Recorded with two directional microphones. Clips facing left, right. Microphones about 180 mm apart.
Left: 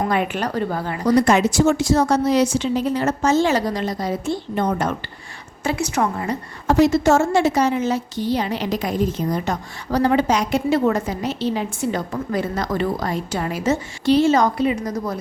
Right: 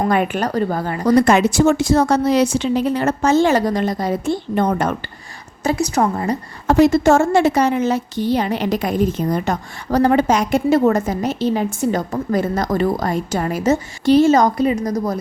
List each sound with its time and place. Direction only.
0.1 s speech: 45° right (ahead or behind)
5.6 s a woman's voice: 40° right (ahead or behind)
6.7 s a woman's voice: 55° right (ahead or behind)